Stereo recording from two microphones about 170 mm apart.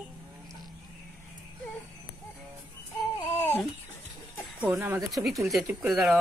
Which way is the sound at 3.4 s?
15° left (ahead or behind).